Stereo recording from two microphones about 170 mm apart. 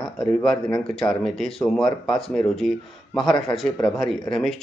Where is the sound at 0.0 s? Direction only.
5° left (ahead or behind).